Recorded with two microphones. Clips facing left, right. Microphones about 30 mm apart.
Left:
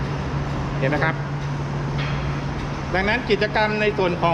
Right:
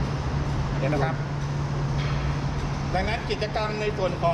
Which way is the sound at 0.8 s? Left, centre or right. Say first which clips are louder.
Left 5 dB; left.